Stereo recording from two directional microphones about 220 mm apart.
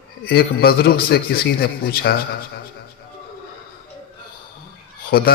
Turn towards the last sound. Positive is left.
turn(degrees=45)  # may be behind; listen again after turning